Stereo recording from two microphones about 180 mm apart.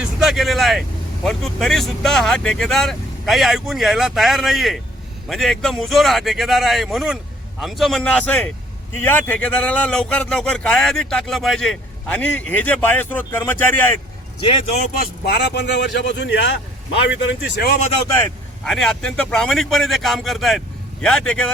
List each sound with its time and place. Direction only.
0.0 s speech: centre (ahead or behind)
14.4 s speech: 30° left (ahead or behind)
14.9 s a man's voice: 60° left (ahead or behind)
18.1 s speech: 15° left (ahead or behind)
18.7 s speech: centre (ahead or behind)